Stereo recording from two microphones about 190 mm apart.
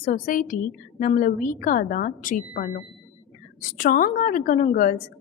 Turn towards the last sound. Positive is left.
turn(degrees=50)  # may be behind; listen again after turning